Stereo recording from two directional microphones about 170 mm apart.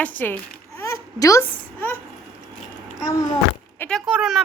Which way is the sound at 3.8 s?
5° left (ahead or behind).